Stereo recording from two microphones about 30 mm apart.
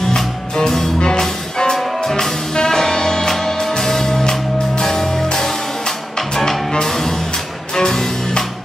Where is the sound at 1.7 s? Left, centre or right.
Centre.